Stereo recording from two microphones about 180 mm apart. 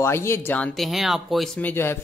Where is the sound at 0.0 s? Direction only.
15° left (ahead or behind).